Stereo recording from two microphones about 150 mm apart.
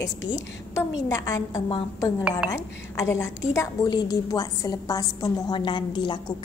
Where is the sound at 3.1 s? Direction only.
25° left (ahead or behind).